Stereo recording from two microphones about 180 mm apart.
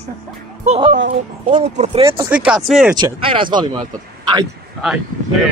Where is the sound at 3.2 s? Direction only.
30° right (ahead or behind).